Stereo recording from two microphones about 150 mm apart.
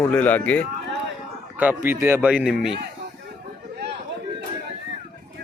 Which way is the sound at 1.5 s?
10° right (ahead or behind).